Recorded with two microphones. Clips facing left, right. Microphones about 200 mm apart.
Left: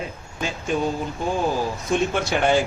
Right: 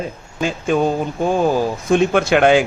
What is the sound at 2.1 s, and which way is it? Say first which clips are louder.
Speech: right 8 dB; 65° right (ahead or behind).